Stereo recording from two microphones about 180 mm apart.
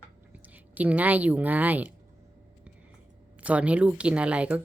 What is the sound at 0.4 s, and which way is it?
Speech, 10° right (ahead or behind).